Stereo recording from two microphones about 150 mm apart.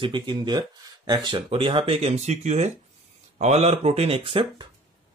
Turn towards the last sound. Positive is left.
turn(degrees=-35)  # may be behind; listen again after turning